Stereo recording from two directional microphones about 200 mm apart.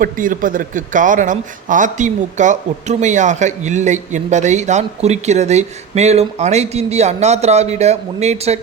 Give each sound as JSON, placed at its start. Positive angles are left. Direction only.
{"t": 0.0, "sound": "speech", "side_deg": -40}